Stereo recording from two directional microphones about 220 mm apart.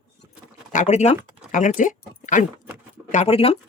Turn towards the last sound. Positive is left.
turn(degrees=25)  # may be behind; listen again after turning